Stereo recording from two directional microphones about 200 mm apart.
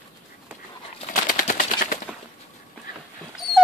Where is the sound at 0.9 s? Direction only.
35° left (ahead or behind).